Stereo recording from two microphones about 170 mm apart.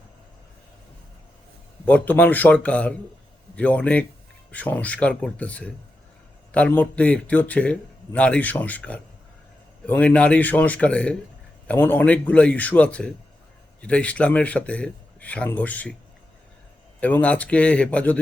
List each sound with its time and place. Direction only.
1.8 s a man's voice: 10° left (ahead or behind)
17.0 s a man's voice: 10° left (ahead or behind)